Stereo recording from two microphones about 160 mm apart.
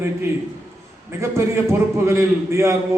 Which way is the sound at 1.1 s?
15° right (ahead or behind).